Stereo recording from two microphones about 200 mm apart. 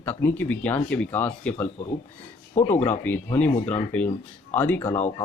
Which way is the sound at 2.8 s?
10° left (ahead or behind).